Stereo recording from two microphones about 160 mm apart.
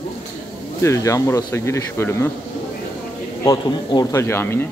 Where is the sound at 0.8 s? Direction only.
20° left (ahead or behind).